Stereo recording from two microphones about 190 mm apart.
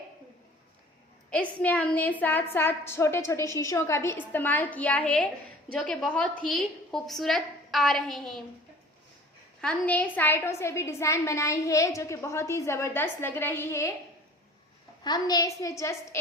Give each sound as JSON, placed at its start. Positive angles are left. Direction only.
{"t": 1.3, "sound": "a woman's voice", "side_deg": 5}
{"t": 9.6, "sound": "a woman's voice", "side_deg": 5}
{"t": 15.0, "sound": "a woman's voice", "side_deg": 20}